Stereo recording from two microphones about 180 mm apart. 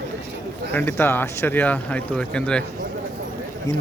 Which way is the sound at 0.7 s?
10° left (ahead or behind).